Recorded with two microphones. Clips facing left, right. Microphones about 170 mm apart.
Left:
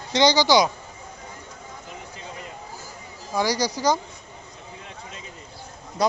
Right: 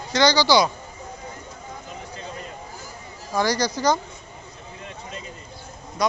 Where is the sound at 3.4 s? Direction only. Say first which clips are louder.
Right 1 dB; 10° left (ahead or behind).